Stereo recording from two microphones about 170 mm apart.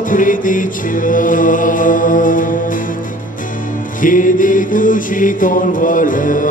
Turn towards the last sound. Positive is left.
turn(degrees=50)  # may be behind; listen again after turning